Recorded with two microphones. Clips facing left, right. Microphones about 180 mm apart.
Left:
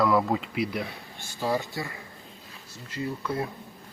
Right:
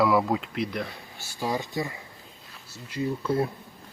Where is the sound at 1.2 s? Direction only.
10° right (ahead or behind).